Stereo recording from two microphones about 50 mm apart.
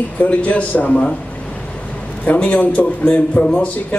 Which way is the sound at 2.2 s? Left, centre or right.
Left.